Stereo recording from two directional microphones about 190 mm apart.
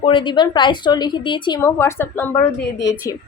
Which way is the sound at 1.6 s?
15° left (ahead or behind).